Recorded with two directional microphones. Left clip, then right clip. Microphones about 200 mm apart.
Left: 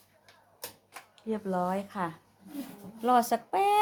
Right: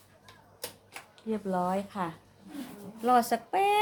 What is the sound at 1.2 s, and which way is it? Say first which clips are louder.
A woman's voice: even; 20° left (ahead or behind).